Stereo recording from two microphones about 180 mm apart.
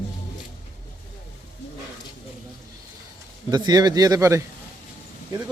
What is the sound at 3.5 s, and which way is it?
Speech, 20° right (ahead or behind).